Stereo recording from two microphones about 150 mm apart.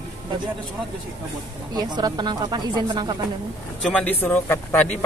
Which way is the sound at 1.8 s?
30° right (ahead or behind).